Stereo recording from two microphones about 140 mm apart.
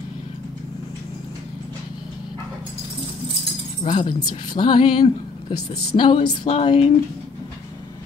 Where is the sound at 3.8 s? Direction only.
35° left (ahead or behind).